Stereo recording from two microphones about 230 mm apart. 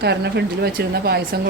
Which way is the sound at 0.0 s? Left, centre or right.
Right.